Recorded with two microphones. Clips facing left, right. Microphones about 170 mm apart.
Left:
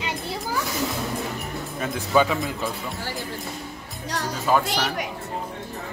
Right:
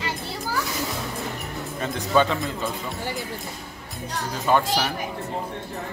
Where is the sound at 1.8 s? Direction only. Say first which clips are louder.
Even; 5° left (ahead or behind).